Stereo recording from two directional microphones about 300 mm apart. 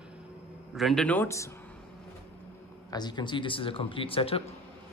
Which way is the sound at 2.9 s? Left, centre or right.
Centre.